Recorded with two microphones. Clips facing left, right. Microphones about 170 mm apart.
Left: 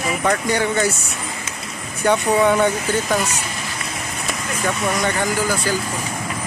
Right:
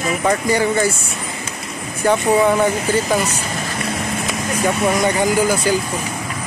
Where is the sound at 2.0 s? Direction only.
5° right (ahead or behind).